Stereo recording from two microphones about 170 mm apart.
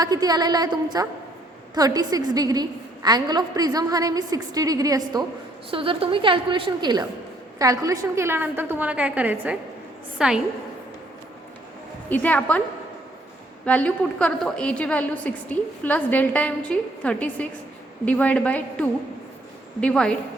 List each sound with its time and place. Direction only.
0.0 s a woman's voice: 25° right (ahead or behind)
5.7 s a woman's voice: 35° right (ahead or behind); by 10.4 s 5° right (ahead or behind)
12.0 s a woman's voice: 10° left (ahead or behind)
13.7 s a woman's voice: 5° left (ahead or behind)